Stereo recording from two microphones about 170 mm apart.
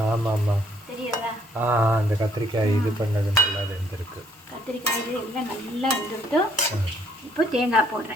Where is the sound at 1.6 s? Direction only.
10° right (ahead or behind).